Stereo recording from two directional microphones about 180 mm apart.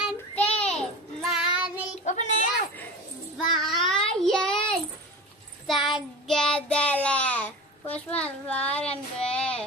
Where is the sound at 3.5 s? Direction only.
Centre (ahead or behind).